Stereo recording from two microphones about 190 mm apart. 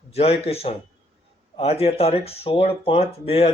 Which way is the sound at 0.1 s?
30° left (ahead or behind).